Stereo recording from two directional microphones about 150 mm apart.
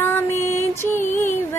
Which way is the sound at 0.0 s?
15° left (ahead or behind).